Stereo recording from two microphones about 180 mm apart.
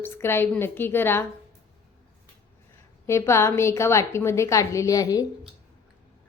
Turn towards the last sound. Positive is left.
turn(degrees=20)  # may be behind; listen again after turning